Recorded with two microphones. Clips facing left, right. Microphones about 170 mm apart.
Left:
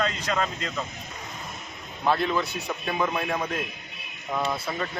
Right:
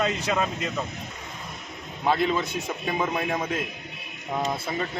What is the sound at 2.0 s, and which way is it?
Speech, 15° right (ahead or behind).